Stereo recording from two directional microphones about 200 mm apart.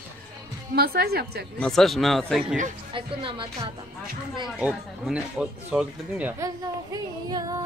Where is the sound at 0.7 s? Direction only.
50° right (ahead or behind).